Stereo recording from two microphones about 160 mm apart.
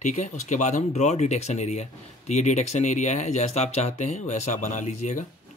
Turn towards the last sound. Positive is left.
turn(degrees=45)  # may be behind; listen again after turning